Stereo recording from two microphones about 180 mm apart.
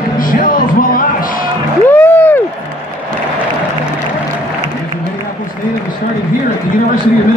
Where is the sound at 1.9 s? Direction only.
10° left (ahead or behind).